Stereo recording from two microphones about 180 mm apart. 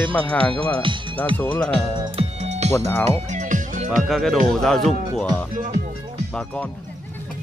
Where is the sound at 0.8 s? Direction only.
25° right (ahead or behind).